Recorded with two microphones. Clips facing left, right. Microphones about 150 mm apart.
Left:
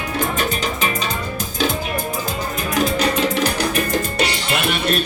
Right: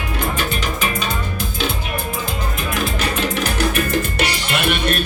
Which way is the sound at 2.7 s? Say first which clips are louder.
Left 5 dB; 35° left (ahead or behind).